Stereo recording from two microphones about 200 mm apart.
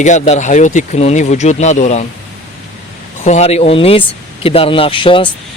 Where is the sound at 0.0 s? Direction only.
35° left (ahead or behind).